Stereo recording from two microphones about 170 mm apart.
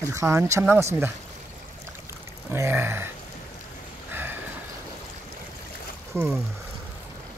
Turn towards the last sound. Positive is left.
turn(degrees=-15)  # may be behind; listen again after turning